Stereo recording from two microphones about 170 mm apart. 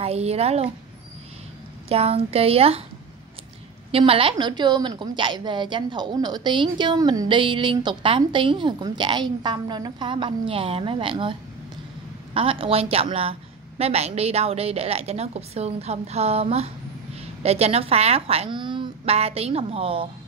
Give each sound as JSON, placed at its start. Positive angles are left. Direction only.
{"t": 0.0, "sound": "a woman's voice", "side_deg": -35}
{"t": 1.9, "sound": "a woman's voice", "side_deg": -35}
{"t": 3.9, "sound": "a woman's voice", "side_deg": -35}
{"t": 12.4, "sound": "a woman's voice", "side_deg": -35}